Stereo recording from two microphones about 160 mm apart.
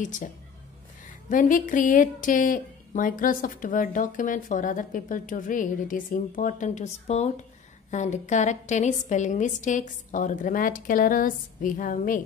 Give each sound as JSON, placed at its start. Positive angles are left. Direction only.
{"t": 0.0, "sound": "a woman's voice", "side_deg": 50}
{"t": 1.3, "sound": "a woman's voice", "side_deg": 55}